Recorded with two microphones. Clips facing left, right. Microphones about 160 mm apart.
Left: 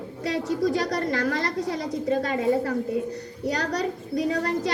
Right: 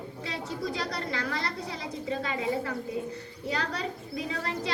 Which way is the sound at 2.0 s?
45° left (ahead or behind).